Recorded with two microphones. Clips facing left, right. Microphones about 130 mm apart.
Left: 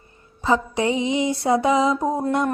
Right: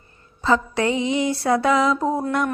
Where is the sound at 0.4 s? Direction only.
15° left (ahead or behind).